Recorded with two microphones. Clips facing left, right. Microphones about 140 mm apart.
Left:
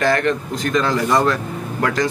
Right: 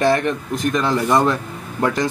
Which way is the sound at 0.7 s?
15° right (ahead or behind).